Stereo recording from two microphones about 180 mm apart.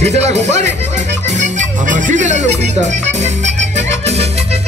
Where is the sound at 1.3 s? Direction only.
40° right (ahead or behind).